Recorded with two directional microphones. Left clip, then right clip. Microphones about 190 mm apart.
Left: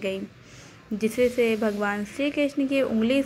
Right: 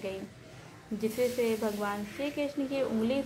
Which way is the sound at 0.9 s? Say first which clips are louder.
Left 7 dB; 20° left (ahead or behind).